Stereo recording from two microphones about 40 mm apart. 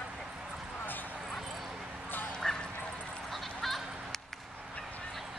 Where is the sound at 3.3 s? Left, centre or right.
Centre.